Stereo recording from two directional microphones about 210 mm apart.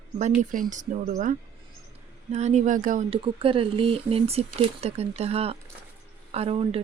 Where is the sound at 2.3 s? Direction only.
35° right (ahead or behind).